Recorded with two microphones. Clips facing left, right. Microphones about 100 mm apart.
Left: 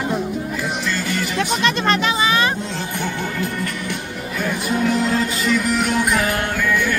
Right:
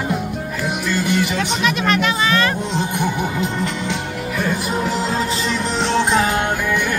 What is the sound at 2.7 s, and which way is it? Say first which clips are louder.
Music: right 4 dB; 15° right (ahead or behind).